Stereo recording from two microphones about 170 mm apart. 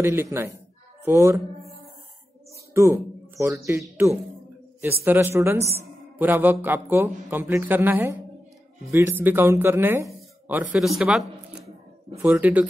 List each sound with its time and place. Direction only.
0.0 s speech: 15° right (ahead or behind)
2.7 s speech: 15° right (ahead or behind)
4.8 s speech: 10° right (ahead or behind)
11.0 s a sound: 5° right (ahead or behind)
12.2 s speech: 10° right (ahead or behind)